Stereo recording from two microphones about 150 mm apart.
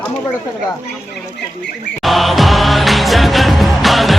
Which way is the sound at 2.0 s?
Centre (ahead or behind).